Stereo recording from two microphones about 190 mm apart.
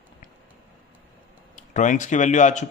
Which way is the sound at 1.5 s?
40° left (ahead or behind).